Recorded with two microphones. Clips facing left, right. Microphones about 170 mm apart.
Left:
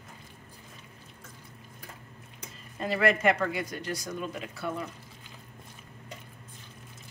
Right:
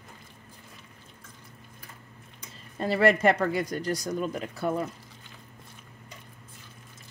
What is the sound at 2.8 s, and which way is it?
Speech, 35° right (ahead or behind).